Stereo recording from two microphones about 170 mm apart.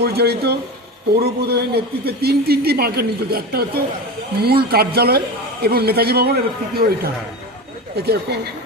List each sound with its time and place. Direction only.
0.0 s a man's voice: 70° right (ahead or behind)